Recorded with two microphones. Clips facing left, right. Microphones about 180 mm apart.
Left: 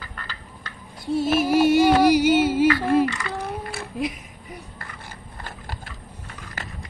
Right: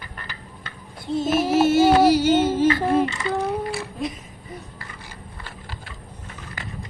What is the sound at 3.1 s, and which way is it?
Speech, 25° right (ahead or behind).